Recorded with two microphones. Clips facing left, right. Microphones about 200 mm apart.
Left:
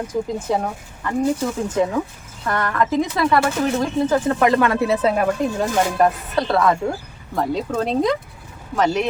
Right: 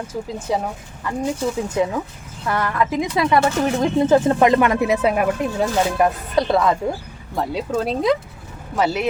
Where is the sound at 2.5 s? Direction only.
10° right (ahead or behind).